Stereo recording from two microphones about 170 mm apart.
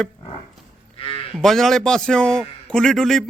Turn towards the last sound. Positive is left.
turn(degrees=0)  # may be behind; listen again after turning